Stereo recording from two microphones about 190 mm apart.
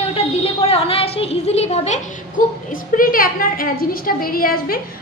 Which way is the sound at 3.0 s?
50° left (ahead or behind).